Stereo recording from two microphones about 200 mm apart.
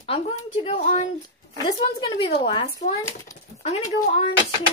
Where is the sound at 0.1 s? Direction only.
30° left (ahead or behind).